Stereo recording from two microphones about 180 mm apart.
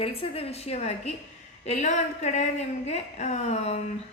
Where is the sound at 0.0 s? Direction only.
35° left (ahead or behind).